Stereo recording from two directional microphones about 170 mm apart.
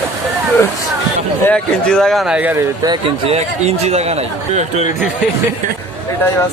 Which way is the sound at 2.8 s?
25° right (ahead or behind).